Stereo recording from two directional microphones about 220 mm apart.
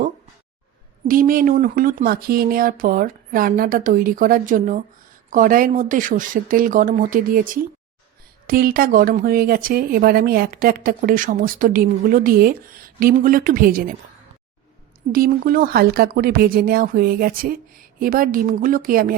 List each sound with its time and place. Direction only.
1.0 s a woman's voice: 40° right (ahead or behind)
15.1 s a woman's voice: 40° right (ahead or behind)